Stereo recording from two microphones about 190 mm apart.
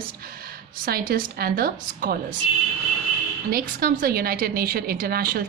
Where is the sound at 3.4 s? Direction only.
50° right (ahead or behind).